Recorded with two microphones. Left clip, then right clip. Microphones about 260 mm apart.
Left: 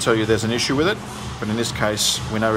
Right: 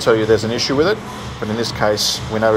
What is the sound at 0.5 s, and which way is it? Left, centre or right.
Speech, centre.